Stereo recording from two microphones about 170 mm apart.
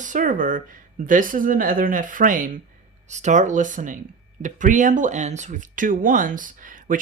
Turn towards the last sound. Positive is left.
turn(degrees=-50)  # may be behind; listen again after turning